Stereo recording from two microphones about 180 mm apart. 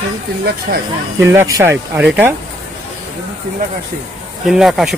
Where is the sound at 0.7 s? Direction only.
50° right (ahead or behind).